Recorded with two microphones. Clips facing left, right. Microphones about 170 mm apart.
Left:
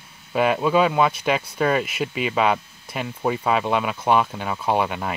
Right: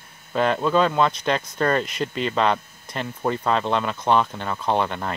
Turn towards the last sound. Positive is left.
turn(degrees=5)  # may be behind; listen again after turning